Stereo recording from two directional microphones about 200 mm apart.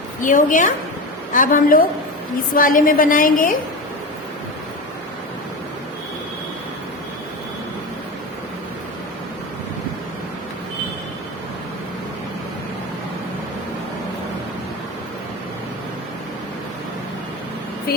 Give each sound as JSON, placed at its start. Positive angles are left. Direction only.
{"t": 0.2, "sound": "a woman's voice", "side_deg": 40}